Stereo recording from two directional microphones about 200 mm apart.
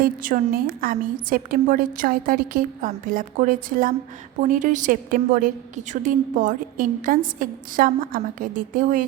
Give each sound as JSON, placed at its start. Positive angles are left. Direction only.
{"t": 0.0, "sound": "a woman's voice", "side_deg": -45}